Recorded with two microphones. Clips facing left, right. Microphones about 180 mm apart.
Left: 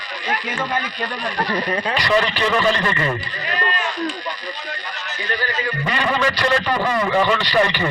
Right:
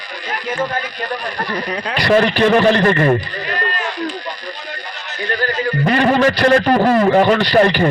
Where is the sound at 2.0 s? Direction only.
50° right (ahead or behind).